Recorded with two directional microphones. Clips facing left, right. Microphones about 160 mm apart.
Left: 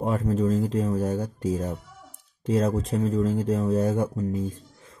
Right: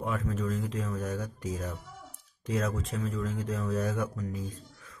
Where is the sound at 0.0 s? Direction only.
35° left (ahead or behind).